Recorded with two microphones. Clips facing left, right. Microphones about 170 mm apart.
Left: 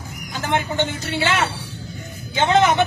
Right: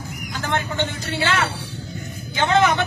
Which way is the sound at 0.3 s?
15° left (ahead or behind).